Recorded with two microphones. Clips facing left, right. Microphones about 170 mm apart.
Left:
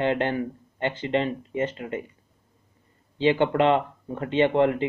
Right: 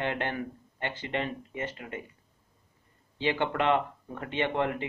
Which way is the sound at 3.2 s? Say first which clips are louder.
Left 8 dB; 20° left (ahead or behind).